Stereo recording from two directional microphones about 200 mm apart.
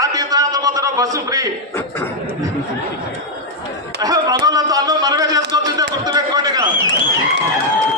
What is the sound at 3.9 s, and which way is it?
A man's voice, 20° right (ahead or behind).